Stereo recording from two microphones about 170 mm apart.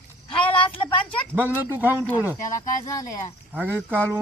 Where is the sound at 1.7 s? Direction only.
15° left (ahead or behind).